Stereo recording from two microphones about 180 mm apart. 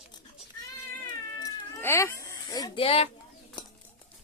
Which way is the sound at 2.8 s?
35° left (ahead or behind).